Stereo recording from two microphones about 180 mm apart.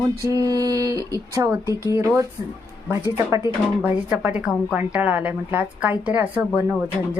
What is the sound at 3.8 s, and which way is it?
A woman's voice, 5° right (ahead or behind).